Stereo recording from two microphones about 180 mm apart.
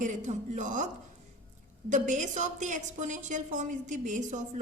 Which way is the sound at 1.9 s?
45° right (ahead or behind).